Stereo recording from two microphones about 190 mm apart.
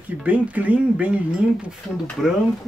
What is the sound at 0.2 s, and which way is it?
Speech, 10° right (ahead or behind).